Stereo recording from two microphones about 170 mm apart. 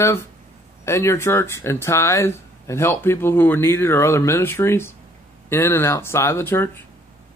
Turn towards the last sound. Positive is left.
turn(degrees=10)  # may be behind; listen again after turning